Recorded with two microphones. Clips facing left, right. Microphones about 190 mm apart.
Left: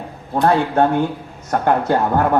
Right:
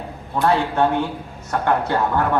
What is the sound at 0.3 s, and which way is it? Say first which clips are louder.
A man's voice: left 3 dB; 45° left (ahead or behind).